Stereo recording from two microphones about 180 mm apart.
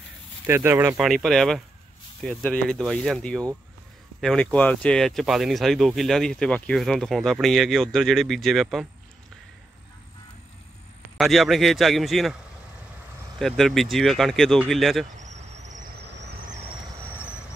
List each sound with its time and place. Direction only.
0.5 s speech: 15° right (ahead or behind)
0.9 s speech: centre (ahead or behind)
11.1 s speech: centre (ahead or behind)
13.4 s speech: centre (ahead or behind)
15.1 s cricket: 40° right (ahead or behind)